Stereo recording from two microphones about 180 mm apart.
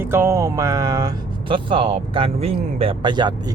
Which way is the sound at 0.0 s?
15° right (ahead or behind).